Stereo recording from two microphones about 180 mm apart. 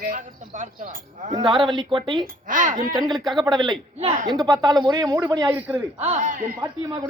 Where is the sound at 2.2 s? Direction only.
45° right (ahead or behind).